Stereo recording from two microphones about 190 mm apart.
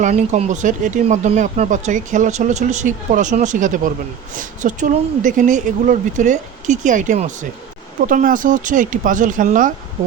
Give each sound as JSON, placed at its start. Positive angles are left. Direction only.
{"t": 0.0, "sound": "speech", "side_deg": -35}